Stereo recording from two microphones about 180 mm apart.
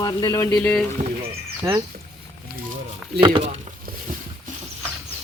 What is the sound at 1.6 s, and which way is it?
Speech, 25° right (ahead or behind).